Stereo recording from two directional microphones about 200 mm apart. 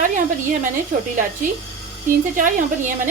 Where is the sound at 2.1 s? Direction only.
45° right (ahead or behind).